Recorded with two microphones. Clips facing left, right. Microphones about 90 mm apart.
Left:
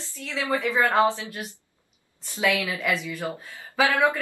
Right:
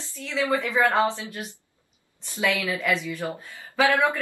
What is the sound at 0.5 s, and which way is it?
Speech, 15° left (ahead or behind).